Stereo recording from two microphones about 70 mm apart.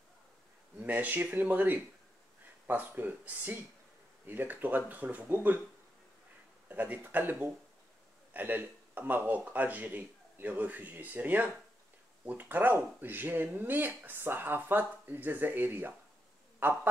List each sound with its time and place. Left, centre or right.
0.7 s speech: right
6.7 s speech: right